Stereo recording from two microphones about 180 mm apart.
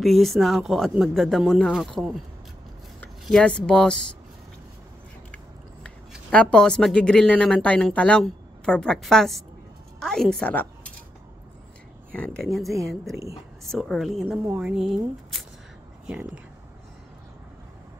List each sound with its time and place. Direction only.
0.0 s speech: centre (ahead or behind)
5.9 s a woman's voice: 5° left (ahead or behind)
12.1 s speech: 5° left (ahead or behind)
13.1 s a woman's voice: 15° right (ahead or behind)
13.7 s speech: centre (ahead or behind)